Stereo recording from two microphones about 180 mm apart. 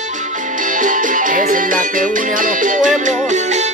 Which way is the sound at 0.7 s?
45° right (ahead or behind).